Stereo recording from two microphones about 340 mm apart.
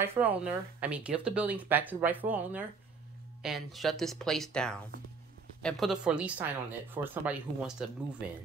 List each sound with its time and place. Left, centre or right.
0.0 s speech: centre